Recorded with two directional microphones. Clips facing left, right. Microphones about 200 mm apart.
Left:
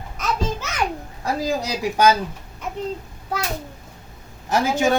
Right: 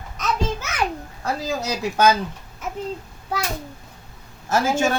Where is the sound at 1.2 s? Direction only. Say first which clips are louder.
Left 2 dB; 15° left (ahead or behind).